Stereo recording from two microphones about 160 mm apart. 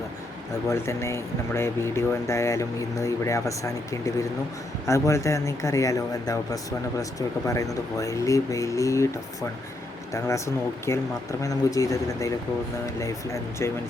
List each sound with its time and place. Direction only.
0.7 s speech: 15° left (ahead or behind)